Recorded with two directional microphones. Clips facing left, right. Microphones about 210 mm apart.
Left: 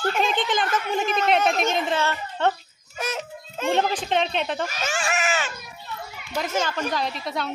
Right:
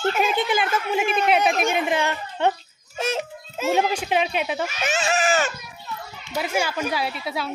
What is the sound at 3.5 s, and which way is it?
A child's voice, 5° right (ahead or behind).